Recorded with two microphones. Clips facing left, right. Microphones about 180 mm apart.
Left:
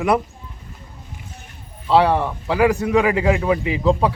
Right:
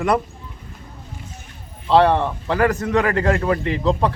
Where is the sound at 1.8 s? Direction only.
5° left (ahead or behind).